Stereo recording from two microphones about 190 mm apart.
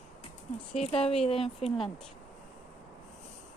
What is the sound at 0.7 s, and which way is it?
Speech, 30° left (ahead or behind).